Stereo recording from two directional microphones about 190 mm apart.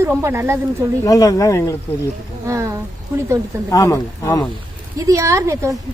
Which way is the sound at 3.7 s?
15° left (ahead or behind).